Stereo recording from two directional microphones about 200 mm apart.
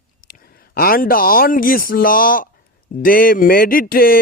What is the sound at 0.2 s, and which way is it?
A man's voice, 45° left (ahead or behind).